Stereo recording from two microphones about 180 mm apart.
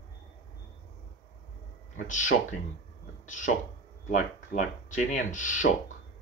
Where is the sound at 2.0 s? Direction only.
45° left (ahead or behind).